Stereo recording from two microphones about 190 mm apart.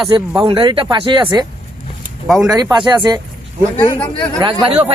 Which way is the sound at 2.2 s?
Centre (ahead or behind).